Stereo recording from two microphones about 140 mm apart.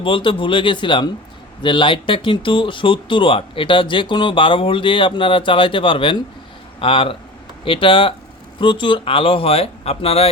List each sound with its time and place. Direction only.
0.0 s speech: 35° left (ahead or behind)